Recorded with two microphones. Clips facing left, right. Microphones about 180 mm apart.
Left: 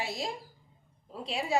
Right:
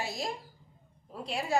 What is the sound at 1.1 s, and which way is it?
Speech, centre (ahead or behind).